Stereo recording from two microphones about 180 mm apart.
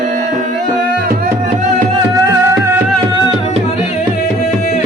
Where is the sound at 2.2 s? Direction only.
15° right (ahead or behind).